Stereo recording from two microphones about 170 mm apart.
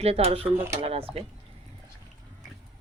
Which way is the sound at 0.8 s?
35° right (ahead or behind).